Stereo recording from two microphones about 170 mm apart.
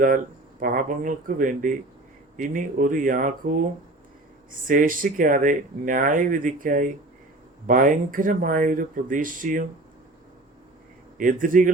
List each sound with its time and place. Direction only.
0.6 s speech: 55° right (ahead or behind)
4.7 s speech: 50° right (ahead or behind)
11.2 s speech: 50° right (ahead or behind)